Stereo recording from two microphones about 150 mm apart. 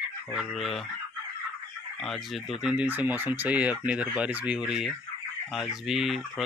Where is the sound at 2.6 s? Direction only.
10° right (ahead or behind).